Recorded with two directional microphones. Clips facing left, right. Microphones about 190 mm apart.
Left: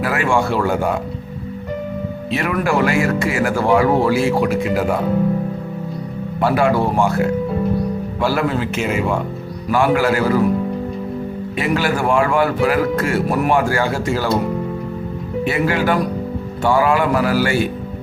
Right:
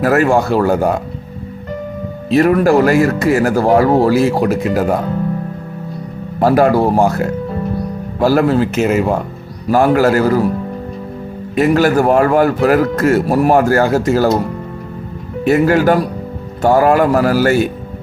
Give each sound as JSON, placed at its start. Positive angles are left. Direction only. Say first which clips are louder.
{"t": 0.0, "sound": "speech", "louder": "right 6 dB", "side_deg": -40}
{"t": 2.3, "sound": "speech", "louder": "right 9 dB", "side_deg": -40}
{"t": 6.4, "sound": "speech", "louder": "right 5 dB", "side_deg": -40}
{"t": 11.5, "sound": "speech", "louder": "right 8 dB", "side_deg": -45}
{"t": 15.4, "sound": "speech", "louder": "right 7 dB", "side_deg": -45}